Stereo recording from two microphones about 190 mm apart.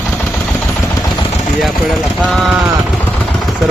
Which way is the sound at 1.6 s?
Centre (ahead or behind).